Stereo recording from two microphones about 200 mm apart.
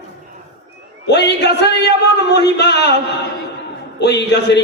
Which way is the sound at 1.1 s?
55° left (ahead or behind).